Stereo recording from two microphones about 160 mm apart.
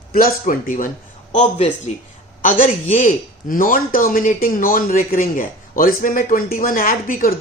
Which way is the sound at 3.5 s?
60° left (ahead or behind).